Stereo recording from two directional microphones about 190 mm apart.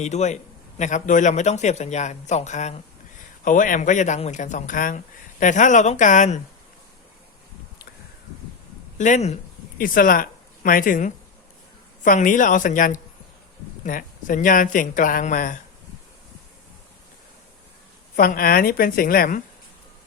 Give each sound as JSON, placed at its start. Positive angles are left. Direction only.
{"t": 0.0, "sound": "speech", "side_deg": 35}
{"t": 9.0, "sound": "speech", "side_deg": 40}
{"t": 18.2, "sound": "speech", "side_deg": 50}